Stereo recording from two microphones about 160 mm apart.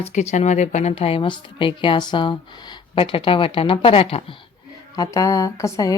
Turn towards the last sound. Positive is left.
turn(degrees=20)  # may be behind; listen again after turning